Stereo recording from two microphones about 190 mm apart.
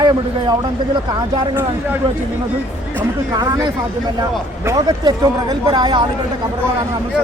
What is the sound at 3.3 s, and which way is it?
Speech, 20° right (ahead or behind).